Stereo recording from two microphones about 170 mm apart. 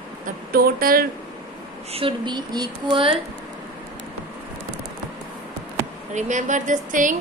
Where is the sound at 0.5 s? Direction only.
60° right (ahead or behind).